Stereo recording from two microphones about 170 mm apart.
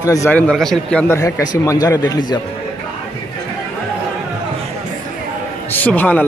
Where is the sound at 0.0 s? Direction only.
20° left (ahead or behind); by 1.0 s 5° left (ahead or behind).